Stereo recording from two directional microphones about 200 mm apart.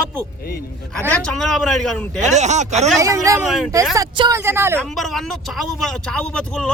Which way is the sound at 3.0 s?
15° right (ahead or behind).